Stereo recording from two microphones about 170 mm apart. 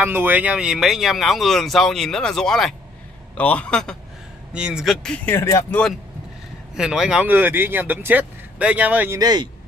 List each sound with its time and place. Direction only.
0.0 s a man's voice: 10° right (ahead or behind); by 3.9 s 5° left (ahead or behind)
4.5 s speech: 5° right (ahead or behind)
6.7 s speech: 5° right (ahead or behind)
9.2 s speech: 25° right (ahead or behind)